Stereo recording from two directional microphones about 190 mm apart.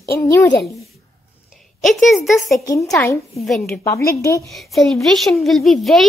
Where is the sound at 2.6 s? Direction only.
20° left (ahead or behind).